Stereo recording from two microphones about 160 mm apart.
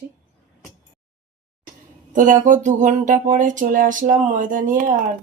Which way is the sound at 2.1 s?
55° right (ahead or behind).